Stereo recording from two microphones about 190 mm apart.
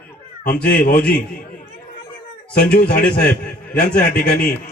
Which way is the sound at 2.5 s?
55° left (ahead or behind).